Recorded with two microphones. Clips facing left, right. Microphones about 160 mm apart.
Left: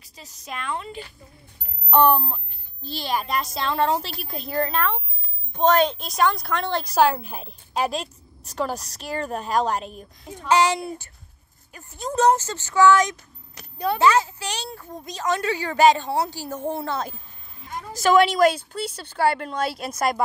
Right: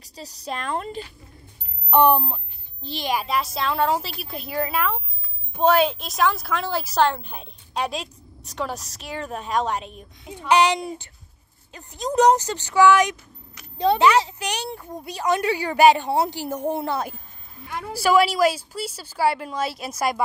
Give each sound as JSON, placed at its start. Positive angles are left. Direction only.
{"t": 0.0, "sound": "a woman's voice", "side_deg": -35}
{"t": 1.9, "sound": "a child's voice", "side_deg": -15}
{"t": 3.3, "sound": "a woman's voice", "side_deg": 0}
{"t": 7.0, "sound": "a woman's voice", "side_deg": 5}
{"t": 10.5, "sound": "a woman's voice", "side_deg": -15}
{"t": 17.6, "sound": "a woman's voice", "side_deg": -65}
{"t": 17.9, "sound": "a woman's voice", "side_deg": -10}